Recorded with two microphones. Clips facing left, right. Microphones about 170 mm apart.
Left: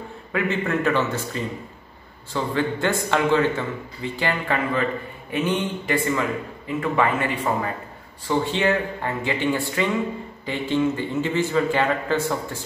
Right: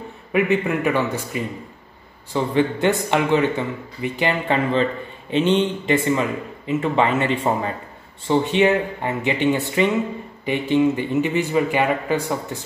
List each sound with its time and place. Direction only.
0.3 s a man's voice: 15° right (ahead or behind)